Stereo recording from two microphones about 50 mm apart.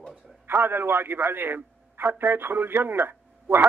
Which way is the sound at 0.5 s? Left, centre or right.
Right.